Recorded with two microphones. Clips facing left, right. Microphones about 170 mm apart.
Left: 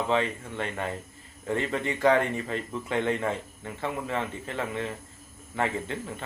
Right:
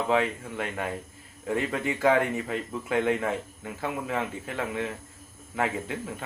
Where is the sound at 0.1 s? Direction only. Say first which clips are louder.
Right 1 dB; 5° right (ahead or behind).